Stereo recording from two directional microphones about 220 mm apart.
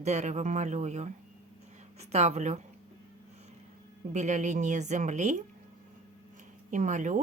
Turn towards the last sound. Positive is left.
turn(degrees=-35)  # may be behind; listen again after turning